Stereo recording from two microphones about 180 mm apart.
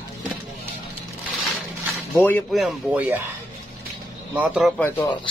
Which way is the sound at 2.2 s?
10° left (ahead or behind).